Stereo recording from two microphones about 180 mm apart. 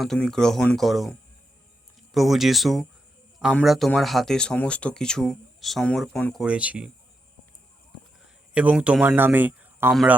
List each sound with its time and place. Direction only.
0.0 s speech: 5° left (ahead or behind)
2.1 s speech: centre (ahead or behind)
8.5 s speech: 5° right (ahead or behind)
9.9 s speech: centre (ahead or behind)